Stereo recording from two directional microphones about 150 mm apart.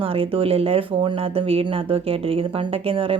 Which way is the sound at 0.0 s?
40° right (ahead or behind).